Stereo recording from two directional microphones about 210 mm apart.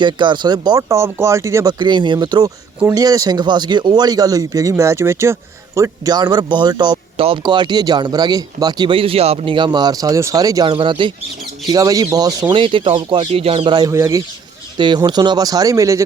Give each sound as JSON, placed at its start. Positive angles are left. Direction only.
{"t": 0.0, "sound": "speech", "side_deg": -20}